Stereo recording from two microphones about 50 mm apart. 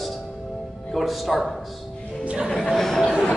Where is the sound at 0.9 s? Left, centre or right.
Centre.